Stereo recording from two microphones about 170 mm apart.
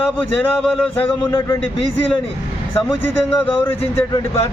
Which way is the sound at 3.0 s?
10° left (ahead or behind).